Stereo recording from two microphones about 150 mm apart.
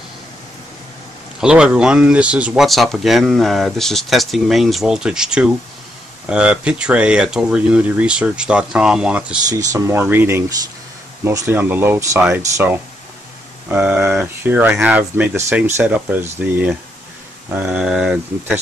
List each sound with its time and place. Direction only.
1.4 s speech: 5° right (ahead or behind)
9.5 s speech: 20° right (ahead or behind); by 18.6 s 5° right (ahead or behind)